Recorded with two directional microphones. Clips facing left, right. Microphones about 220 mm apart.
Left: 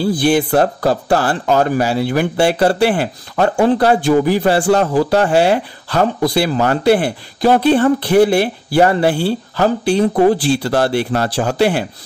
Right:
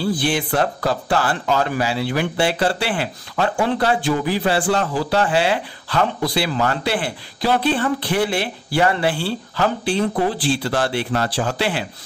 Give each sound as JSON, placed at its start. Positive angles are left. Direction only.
{"t": 0.1, "sound": "speech", "side_deg": 40}